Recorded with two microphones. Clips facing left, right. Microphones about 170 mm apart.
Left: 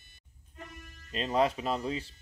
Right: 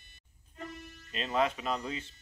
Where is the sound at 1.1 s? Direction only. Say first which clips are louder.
Left 3 dB; 35° left (ahead or behind).